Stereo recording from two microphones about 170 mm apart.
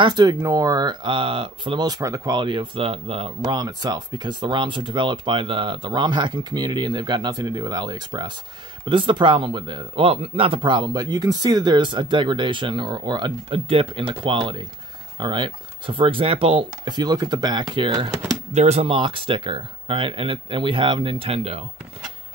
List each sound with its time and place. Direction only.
0.0 s speech: 25° right (ahead or behind)
3.4 s speech: 25° right (ahead or behind)
18.6 s speech: 40° right (ahead or behind)